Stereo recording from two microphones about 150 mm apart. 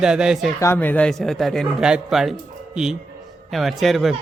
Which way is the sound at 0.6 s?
15° left (ahead or behind).